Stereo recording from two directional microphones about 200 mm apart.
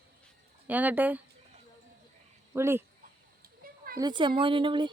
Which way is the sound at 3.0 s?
45° right (ahead or behind).